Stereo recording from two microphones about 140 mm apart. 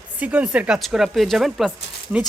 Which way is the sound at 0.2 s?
10° right (ahead or behind).